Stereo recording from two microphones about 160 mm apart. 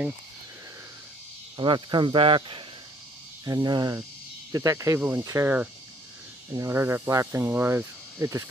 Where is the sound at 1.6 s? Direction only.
30° right (ahead or behind).